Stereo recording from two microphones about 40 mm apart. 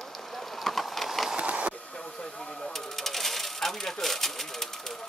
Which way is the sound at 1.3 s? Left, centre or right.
Right.